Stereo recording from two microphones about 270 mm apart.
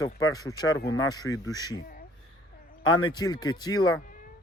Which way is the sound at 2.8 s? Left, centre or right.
Centre.